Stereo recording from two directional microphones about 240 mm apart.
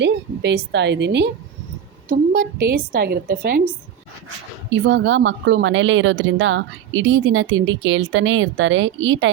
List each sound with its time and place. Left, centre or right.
0.0 s a woman's voice: right
4.7 s speech: right